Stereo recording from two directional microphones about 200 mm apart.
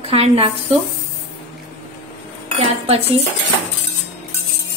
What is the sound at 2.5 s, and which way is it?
Dishes, 30° right (ahead or behind).